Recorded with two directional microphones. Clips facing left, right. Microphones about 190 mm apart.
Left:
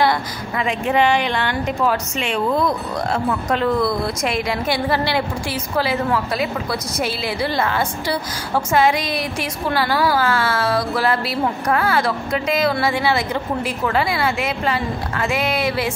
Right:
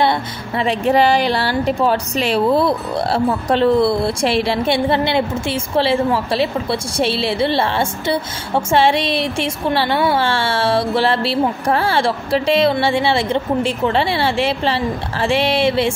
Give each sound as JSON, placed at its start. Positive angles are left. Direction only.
{"t": 0.6, "sound": "a woman's voice", "side_deg": -35}